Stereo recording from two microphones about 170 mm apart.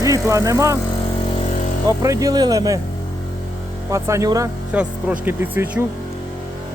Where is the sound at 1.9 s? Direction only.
20° right (ahead or behind).